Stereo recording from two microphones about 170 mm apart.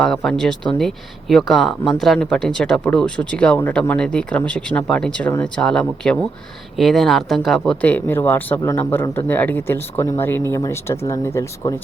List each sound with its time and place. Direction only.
0.0 s speech: centre (ahead or behind); by 11.7 s 20° left (ahead or behind)